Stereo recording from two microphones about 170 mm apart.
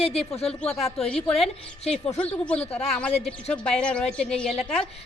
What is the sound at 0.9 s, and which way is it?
Speech, 5° left (ahead or behind).